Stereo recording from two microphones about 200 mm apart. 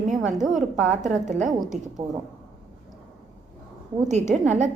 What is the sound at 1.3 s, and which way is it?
Speech, 35° right (ahead or behind).